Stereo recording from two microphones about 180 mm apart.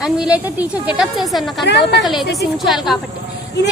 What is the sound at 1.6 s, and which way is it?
Speech, 70° left (ahead or behind).